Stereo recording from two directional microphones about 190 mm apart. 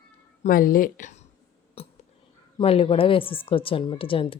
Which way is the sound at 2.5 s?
30° left (ahead or behind).